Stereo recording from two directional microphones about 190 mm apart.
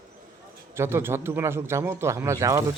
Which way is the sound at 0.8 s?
10° right (ahead or behind).